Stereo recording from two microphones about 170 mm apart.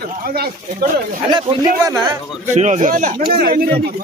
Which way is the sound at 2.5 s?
45° right (ahead or behind).